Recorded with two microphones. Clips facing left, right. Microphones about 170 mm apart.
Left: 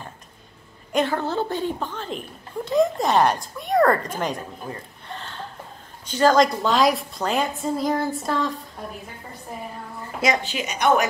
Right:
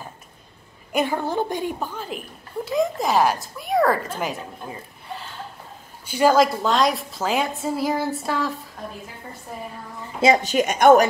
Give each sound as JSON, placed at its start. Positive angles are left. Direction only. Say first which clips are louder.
{"t": 0.9, "sound": "a woman's voice", "louder": "even", "side_deg": -10}
{"t": 10.4, "sound": "a woman's voice", "louder": "right 7 dB", "side_deg": -45}